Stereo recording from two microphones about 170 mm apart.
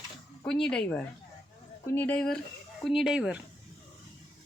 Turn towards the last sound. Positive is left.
turn(degrees=-5)  # may be behind; listen again after turning